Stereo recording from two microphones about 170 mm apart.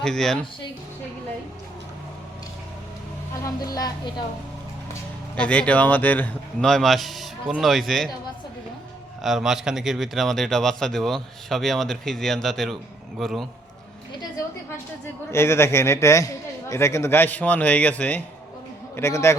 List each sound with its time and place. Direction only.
0.0 s speech: 5° left (ahead or behind)
3.4 s speech: 20° left (ahead or behind)
5.4 s speech: 5° left (ahead or behind)
9.2 s speech: centre (ahead or behind)
15.3 s a man's voice: 15° left (ahead or behind)